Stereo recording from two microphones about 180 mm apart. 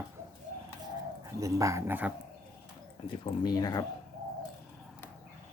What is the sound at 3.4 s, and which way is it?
Speech, 20° left (ahead or behind).